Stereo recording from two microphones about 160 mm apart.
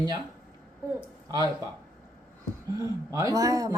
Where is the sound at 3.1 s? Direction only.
20° right (ahead or behind).